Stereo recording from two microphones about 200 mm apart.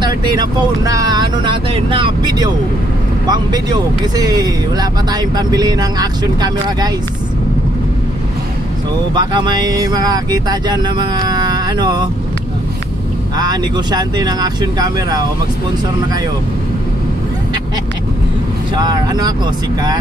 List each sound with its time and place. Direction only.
0.0 s speech: 20° right (ahead or behind)
9.1 s speech: 20° right (ahead or behind)
13.4 s speech: 20° right (ahead or behind)
18.8 s speech: 20° right (ahead or behind)